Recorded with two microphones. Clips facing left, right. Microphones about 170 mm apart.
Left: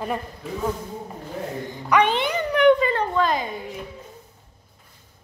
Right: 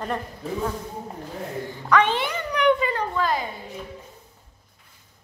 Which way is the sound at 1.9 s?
15° left (ahead or behind).